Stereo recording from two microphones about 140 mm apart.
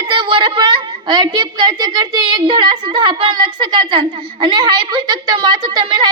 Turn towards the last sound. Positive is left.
turn(degrees=-30)  # may be behind; listen again after turning